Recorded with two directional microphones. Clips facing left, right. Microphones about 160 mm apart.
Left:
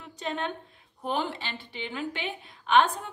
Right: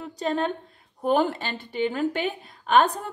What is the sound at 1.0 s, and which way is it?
A woman's voice, 45° right (ahead or behind).